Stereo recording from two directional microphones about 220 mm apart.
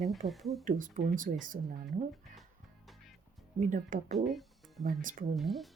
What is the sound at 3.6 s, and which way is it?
Speech, 35° right (ahead or behind).